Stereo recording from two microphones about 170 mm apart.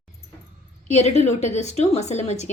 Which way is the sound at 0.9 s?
40° left (ahead or behind).